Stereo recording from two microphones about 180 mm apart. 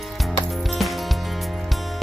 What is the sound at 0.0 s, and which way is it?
Music, centre (ahead or behind).